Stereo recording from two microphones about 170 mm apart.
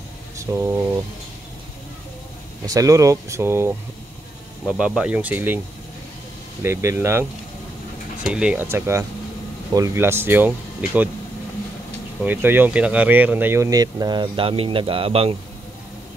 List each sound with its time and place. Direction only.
0.4 s speech: 15° right (ahead or behind)
2.6 s speech: 20° right (ahead or behind)
6.6 s speech: 15° right (ahead or behind)
12.2 s speech: 10° right (ahead or behind); by 15.3 s 35° right (ahead or behind)